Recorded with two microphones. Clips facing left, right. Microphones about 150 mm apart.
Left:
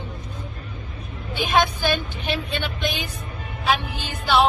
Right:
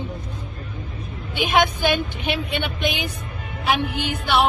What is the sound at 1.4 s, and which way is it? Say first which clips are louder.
A woman's voice: right 2 dB; 15° right (ahead or behind).